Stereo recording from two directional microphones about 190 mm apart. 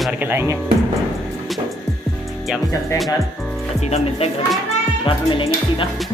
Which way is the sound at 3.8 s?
35° left (ahead or behind).